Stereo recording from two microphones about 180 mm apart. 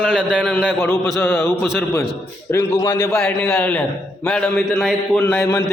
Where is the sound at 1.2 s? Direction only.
15° left (ahead or behind).